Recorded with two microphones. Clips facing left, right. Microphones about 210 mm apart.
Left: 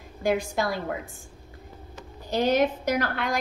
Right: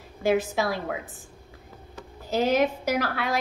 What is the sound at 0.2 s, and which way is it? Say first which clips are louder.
Speech: right 2 dB; 5° right (ahead or behind).